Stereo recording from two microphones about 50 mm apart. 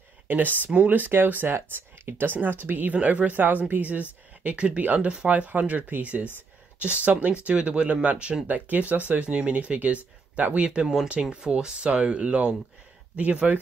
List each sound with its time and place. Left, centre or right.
0.3 s speech: right
11.1 s speech: centre